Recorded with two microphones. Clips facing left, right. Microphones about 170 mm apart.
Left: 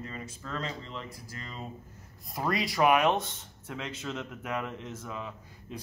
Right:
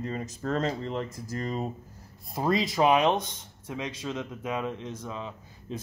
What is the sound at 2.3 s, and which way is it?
A man's voice, 25° right (ahead or behind).